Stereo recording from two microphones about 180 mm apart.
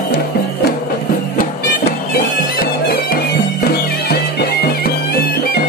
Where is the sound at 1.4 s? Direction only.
55° left (ahead or behind).